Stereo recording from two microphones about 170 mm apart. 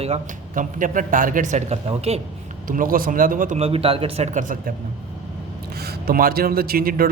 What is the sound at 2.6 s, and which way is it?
Speech, 55° right (ahead or behind).